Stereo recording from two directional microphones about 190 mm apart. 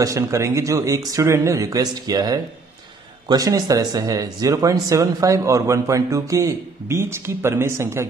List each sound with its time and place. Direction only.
0.0 s speech: 15° right (ahead or behind)